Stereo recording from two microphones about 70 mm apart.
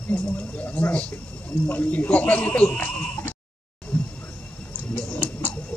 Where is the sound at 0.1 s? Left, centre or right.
Left.